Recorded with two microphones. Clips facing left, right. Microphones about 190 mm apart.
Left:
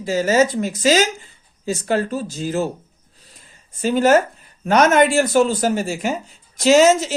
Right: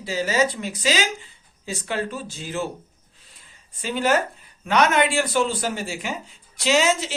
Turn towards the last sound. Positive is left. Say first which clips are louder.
# left 8 dB
turn(degrees=45)  # may be behind; listen again after turning